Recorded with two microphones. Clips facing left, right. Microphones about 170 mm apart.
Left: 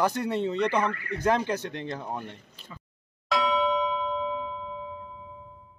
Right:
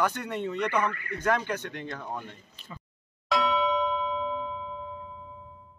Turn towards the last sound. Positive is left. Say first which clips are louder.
# left 1 dB
turn(degrees=0)  # may be behind; listen again after turning